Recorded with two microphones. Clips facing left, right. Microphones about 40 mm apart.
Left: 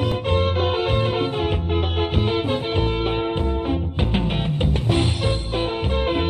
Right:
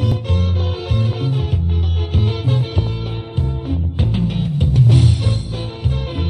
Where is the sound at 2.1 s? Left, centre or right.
Centre.